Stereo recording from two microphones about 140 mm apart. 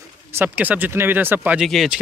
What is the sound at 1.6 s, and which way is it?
Speech, centre (ahead or behind).